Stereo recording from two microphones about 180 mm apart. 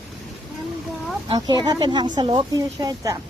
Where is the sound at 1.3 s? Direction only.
25° right (ahead or behind).